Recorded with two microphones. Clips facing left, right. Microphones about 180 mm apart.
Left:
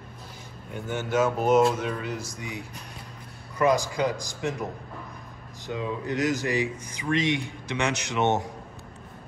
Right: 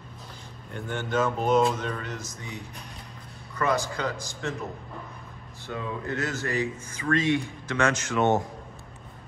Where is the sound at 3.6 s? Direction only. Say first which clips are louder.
Left 4 dB; 15° left (ahead or behind).